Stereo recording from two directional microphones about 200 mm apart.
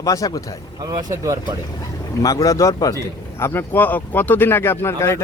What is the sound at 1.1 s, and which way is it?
Speech, 15° right (ahead or behind).